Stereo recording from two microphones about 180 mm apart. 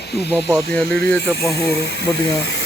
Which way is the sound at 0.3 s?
5° right (ahead or behind).